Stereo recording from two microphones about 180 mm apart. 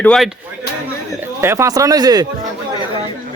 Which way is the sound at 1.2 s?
15° right (ahead or behind).